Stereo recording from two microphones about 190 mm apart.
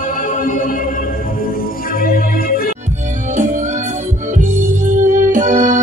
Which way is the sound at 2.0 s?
50° left (ahead or behind).